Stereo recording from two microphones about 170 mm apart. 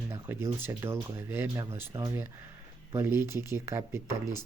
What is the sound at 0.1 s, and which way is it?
Speech, 15° right (ahead or behind).